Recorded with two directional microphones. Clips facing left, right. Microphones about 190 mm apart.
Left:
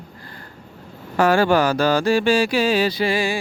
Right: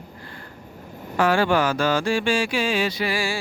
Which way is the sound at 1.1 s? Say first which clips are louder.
Left 3 dB; 40° left (ahead or behind).